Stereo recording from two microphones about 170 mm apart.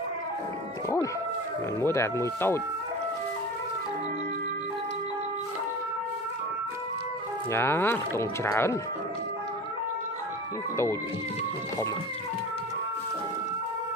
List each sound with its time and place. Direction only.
1.8 s speech: 15° left (ahead or behind)
7.5 s speech: 15° left (ahead or behind)